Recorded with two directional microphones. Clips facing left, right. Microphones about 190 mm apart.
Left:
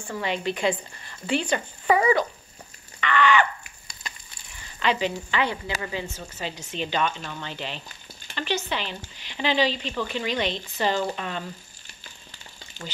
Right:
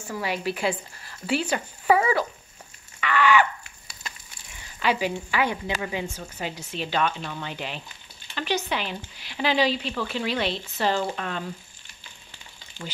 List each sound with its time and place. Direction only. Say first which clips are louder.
0.0 s speech: even; 5° right (ahead or behind)
3.0 s a sound: even; 10° right (ahead or behind)
4.7 s a woman's voice: even; 10° right (ahead or behind)